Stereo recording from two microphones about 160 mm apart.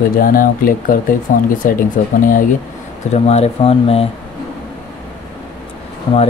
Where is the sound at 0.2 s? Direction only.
65° left (ahead or behind).